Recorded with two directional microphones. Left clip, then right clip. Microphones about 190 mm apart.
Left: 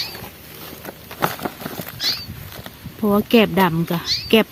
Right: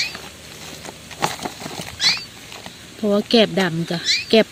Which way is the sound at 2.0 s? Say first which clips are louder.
Right 4 dB; 15° left (ahead or behind).